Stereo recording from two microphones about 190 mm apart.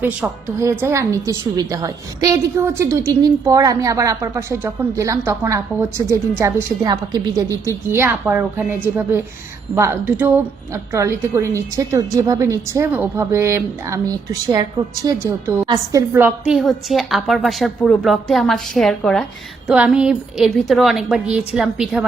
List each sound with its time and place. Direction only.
0.0 s a woman's voice: 10° right (ahead or behind)